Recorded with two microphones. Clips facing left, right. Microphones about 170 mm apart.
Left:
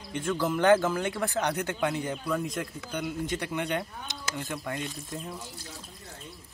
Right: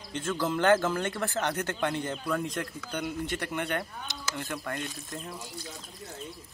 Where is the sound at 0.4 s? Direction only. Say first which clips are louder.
Left 2 dB; 15° left (ahead or behind).